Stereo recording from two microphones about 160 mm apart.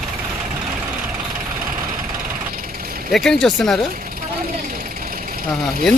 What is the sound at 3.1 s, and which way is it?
Speech, centre (ahead or behind).